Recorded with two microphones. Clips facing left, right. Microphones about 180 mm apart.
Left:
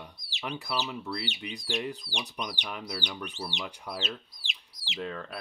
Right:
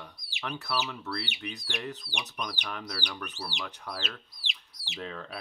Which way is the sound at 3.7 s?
10° left (ahead or behind).